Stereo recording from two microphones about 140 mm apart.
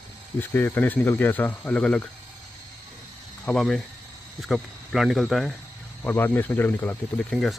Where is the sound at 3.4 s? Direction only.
Centre (ahead or behind).